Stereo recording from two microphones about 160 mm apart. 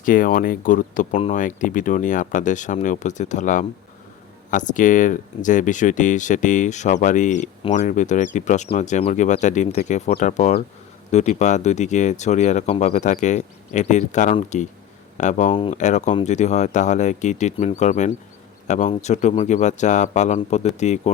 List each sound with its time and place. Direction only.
0.0 s speech: 60° left (ahead or behind)
15.5 s speech: 35° left (ahead or behind)
15.8 s speech: 50° left (ahead or behind)